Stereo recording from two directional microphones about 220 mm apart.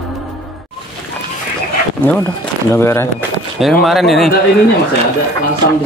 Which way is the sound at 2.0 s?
10° left (ahead or behind).